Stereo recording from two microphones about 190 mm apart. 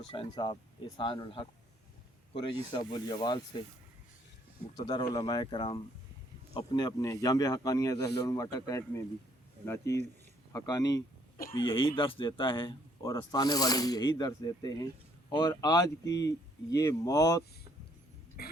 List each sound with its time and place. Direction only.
0.1 s speech: 25° left (ahead or behind)
4.8 s speech: 20° left (ahead or behind)